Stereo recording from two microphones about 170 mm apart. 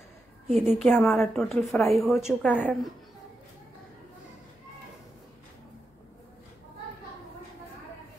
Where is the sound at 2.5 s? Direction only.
10° left (ahead or behind).